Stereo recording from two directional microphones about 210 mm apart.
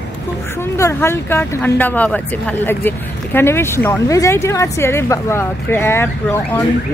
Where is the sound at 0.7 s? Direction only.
15° left (ahead or behind).